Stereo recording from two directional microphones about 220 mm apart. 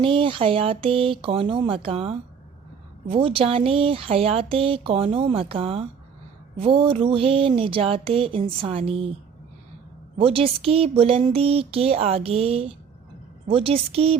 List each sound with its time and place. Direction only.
0.0 s speech: 25° right (ahead or behind)
10.2 s speech: 25° right (ahead or behind)